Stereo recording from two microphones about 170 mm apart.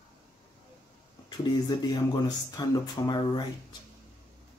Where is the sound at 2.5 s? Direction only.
25° left (ahead or behind).